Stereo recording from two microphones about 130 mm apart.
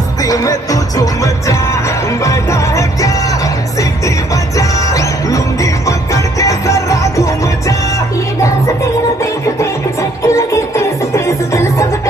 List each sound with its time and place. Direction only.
0.2 s music: 25° left (ahead or behind)
4.6 s music: 25° left (ahead or behind)
10.2 s music: 20° left (ahead or behind)